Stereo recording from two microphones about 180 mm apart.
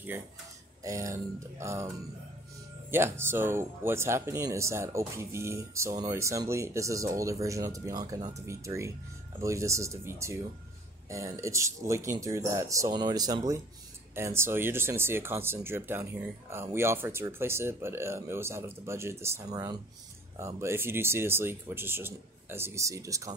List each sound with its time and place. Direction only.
0.8 s speech: 15° right (ahead or behind)